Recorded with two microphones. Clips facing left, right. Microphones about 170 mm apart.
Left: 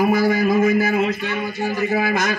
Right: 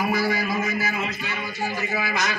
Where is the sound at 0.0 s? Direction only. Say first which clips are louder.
Left 7 dB; 50° left (ahead or behind).